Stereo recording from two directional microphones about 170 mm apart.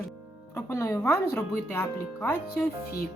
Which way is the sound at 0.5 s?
15° left (ahead or behind).